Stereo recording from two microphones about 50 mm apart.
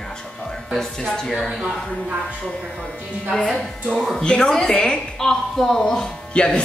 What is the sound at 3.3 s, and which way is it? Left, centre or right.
Speech, centre.